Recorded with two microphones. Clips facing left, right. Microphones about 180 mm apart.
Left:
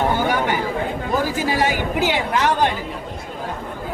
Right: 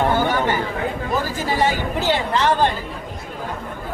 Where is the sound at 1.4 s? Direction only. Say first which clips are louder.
Even; 15° left (ahead or behind).